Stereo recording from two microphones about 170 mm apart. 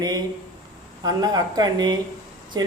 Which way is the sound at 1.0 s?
20° right (ahead or behind).